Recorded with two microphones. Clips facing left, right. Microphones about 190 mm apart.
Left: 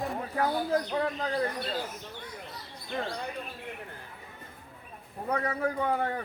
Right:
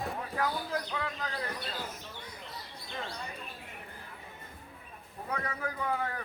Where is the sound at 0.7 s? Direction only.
40° left (ahead or behind).